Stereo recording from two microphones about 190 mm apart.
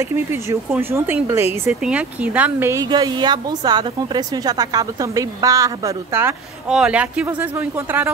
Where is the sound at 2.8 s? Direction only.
20° right (ahead or behind).